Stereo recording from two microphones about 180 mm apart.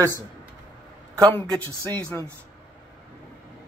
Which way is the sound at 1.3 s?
10° left (ahead or behind).